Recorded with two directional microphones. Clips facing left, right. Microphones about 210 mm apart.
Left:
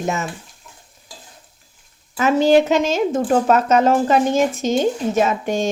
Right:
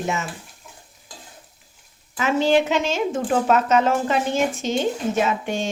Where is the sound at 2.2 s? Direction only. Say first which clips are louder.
Left 5 dB; 45° left (ahead or behind).